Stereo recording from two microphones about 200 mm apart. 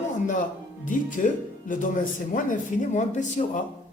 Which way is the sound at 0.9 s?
40° left (ahead or behind).